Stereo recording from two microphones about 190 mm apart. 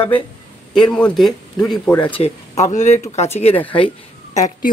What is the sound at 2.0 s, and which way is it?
Speech, 30° left (ahead or behind).